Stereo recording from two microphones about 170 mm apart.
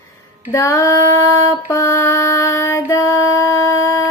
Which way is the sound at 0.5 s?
15° left (ahead or behind).